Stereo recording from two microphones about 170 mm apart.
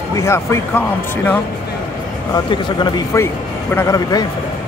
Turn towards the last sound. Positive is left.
turn(degrees=20)  # may be behind; listen again after turning